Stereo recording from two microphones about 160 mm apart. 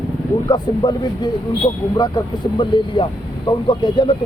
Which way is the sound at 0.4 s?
25° left (ahead or behind).